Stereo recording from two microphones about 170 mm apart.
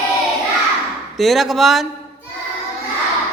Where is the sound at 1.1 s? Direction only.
Centre (ahead or behind).